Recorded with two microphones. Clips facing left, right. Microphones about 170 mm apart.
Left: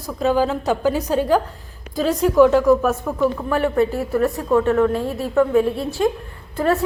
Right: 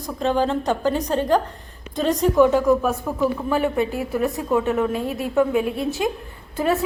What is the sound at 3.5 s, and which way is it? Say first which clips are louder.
A woman's voice: left 3 dB; 20° right (ahead or behind).